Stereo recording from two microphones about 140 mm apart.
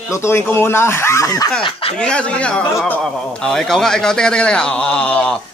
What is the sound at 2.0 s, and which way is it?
A man's voice, 5° left (ahead or behind).